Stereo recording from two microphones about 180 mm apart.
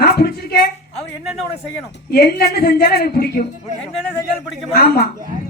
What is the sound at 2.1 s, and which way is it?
A woman's voice, 60° left (ahead or behind).